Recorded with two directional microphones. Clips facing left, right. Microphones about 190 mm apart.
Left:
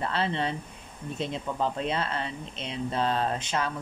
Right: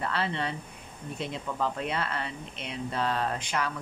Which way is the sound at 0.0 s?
25° left (ahead or behind).